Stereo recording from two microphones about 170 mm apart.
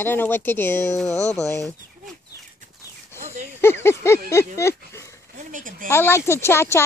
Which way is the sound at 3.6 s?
15° left (ahead or behind).